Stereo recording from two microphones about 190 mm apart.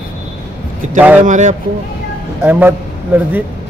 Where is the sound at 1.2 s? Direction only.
40° right (ahead or behind).